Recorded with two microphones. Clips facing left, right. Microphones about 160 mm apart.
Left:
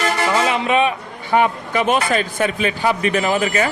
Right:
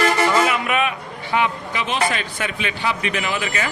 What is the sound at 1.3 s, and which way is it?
A man's voice, 45° left (ahead or behind).